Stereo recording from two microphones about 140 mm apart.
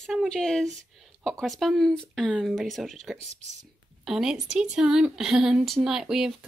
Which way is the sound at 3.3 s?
55° right (ahead or behind).